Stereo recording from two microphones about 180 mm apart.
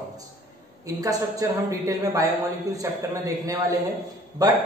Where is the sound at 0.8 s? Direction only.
20° right (ahead or behind).